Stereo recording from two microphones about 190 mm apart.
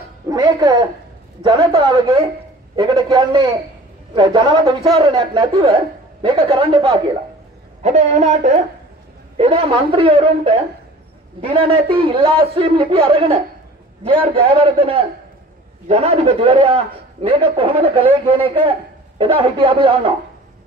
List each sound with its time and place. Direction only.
0.3 s a man's voice: 20° right (ahead or behind)
7.8 s a woman's voice: 35° right (ahead or behind)